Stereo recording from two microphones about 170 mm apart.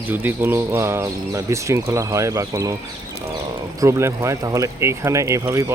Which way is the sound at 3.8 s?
15° right (ahead or behind).